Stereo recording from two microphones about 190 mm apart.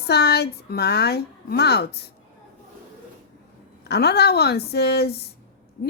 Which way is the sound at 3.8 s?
60° left (ahead or behind).